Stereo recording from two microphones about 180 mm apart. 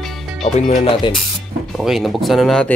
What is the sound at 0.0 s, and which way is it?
Music, centre (ahead or behind).